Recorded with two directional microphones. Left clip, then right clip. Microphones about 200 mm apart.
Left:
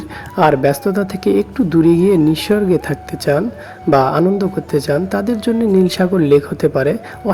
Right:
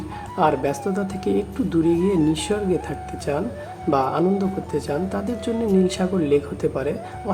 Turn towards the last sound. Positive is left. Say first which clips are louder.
# left 9 dB
turn(degrees=35)  # may be behind; listen again after turning